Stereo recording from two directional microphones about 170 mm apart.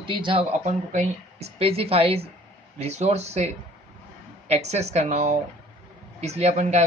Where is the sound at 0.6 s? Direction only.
45° right (ahead or behind).